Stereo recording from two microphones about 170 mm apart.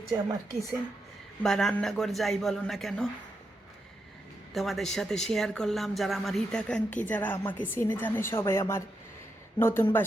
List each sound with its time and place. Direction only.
1.4 s a man's voice: 5° left (ahead or behind)
4.5 s speech: centre (ahead or behind)